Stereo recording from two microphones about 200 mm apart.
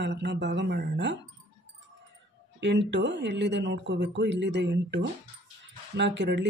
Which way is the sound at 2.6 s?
60° right (ahead or behind).